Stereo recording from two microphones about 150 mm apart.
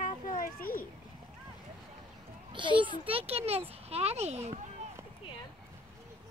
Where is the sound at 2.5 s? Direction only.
35° right (ahead or behind).